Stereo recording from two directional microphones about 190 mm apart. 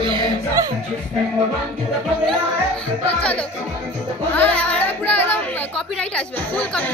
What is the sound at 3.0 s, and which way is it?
Speech, 10° left (ahead or behind).